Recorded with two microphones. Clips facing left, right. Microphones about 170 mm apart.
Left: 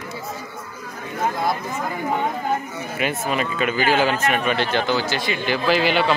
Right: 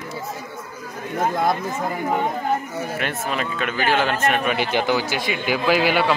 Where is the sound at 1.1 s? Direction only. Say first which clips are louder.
Right 2 dB; 45° right (ahead or behind).